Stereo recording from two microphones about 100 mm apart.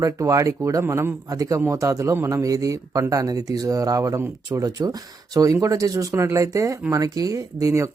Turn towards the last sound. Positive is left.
turn(degrees=-30)  # may be behind; listen again after turning